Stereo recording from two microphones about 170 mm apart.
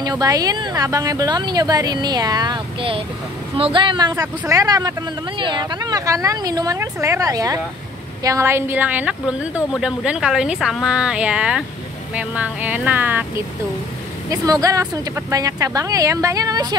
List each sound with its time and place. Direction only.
0.0 s a woman's voice: 20° right (ahead or behind)
14.3 s a woman's voice: 20° right (ahead or behind)